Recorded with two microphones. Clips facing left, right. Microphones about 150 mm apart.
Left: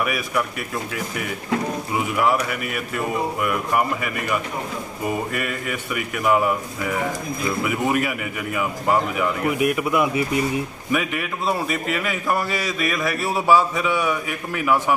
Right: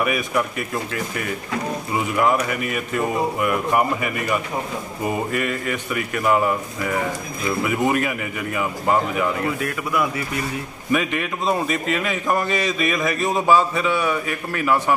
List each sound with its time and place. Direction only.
0.0 s a man's voice: centre (ahead or behind)
3.3 s a man's voice: 5° right (ahead or behind)
9.5 s speech: 15° left (ahead or behind)
10.9 s a man's voice: 5° left (ahead or behind)